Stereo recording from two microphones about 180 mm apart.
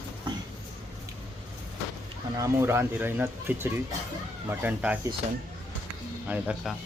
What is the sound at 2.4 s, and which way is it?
Speech, 15° right (ahead or behind).